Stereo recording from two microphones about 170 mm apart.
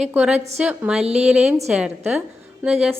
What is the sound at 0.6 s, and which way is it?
A woman's voice, 5° right (ahead or behind).